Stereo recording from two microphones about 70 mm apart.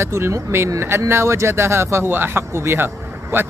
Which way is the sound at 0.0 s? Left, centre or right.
Right.